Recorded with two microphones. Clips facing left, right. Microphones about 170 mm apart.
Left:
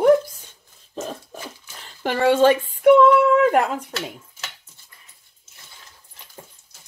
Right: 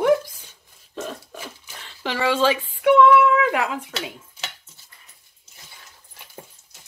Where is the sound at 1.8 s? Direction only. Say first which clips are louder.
Left 5 dB; 50° left (ahead or behind).